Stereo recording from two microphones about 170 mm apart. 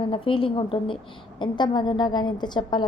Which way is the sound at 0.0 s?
30° left (ahead or behind).